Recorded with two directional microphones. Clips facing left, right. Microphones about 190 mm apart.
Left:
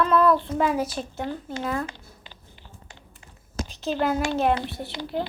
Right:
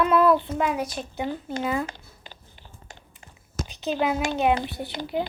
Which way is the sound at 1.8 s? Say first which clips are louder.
Even; 45° right (ahead or behind).